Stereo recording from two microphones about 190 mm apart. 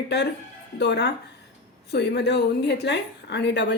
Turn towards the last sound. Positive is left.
turn(degrees=65)  # may be behind; listen again after turning